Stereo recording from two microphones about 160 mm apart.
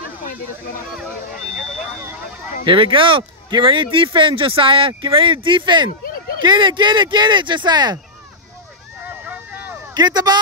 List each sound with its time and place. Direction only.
2.6 s speech: 35° right (ahead or behind)
9.0 s vehicle: 10° right (ahead or behind)
9.9 s speech: 25° right (ahead or behind)